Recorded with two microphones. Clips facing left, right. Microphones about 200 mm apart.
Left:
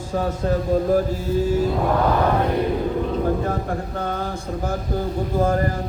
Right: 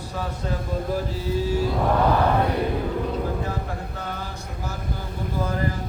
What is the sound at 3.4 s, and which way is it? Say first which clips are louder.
Speech: left 5 dB; 50° left (ahead or behind).